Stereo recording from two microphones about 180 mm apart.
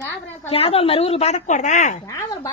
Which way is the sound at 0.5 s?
30° left (ahead or behind).